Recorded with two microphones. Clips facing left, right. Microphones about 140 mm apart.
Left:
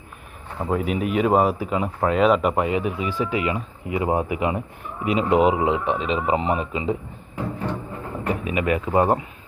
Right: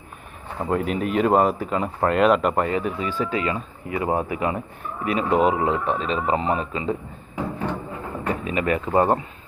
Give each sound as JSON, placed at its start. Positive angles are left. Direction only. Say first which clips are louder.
{"t": 0.6, "sound": "speech", "louder": "even", "side_deg": 0}
{"t": 8.3, "sound": "speech", "louder": "left 1 dB", "side_deg": 10}